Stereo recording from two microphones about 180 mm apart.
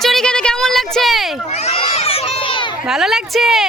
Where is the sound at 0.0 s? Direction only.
Centre (ahead or behind).